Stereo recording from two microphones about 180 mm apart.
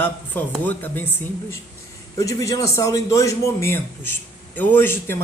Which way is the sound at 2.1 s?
20° left (ahead or behind).